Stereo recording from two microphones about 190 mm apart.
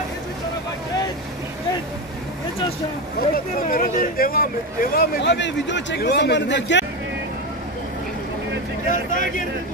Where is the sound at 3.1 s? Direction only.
50° left (ahead or behind); by 6.9 s 70° left (ahead or behind).